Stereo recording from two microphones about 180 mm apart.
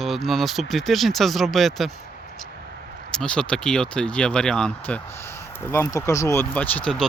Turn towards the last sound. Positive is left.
turn(degrees=5)  # may be behind; listen again after turning